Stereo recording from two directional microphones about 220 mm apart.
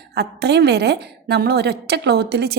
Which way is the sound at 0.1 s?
50° right (ahead or behind).